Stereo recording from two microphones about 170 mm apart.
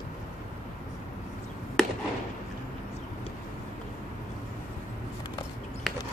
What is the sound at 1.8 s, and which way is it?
Chop, 5° left (ahead or behind).